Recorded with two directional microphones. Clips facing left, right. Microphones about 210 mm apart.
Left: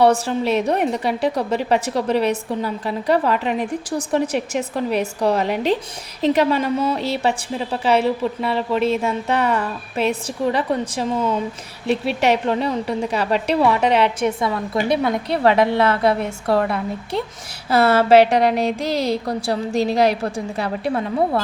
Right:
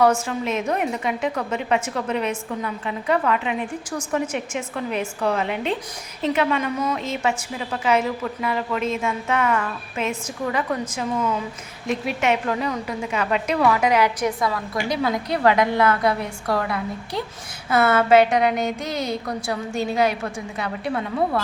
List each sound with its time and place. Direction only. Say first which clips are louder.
0.0 s a woman's voice: left 3 dB; 35° left (ahead or behind)